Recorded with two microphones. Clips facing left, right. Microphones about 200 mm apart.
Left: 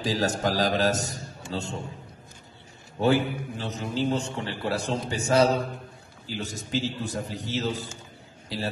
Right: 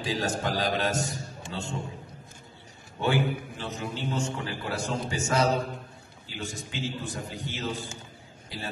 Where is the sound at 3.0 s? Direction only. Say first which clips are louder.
Left 4 dB; 40° left (ahead or behind).